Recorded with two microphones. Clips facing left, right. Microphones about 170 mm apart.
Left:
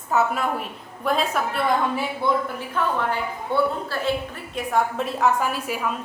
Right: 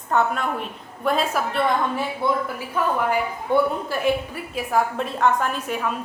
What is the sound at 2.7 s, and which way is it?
A woman's voice, 10° right (ahead or behind).